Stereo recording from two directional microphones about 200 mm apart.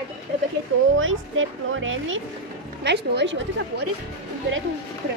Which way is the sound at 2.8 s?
60° right (ahead or behind).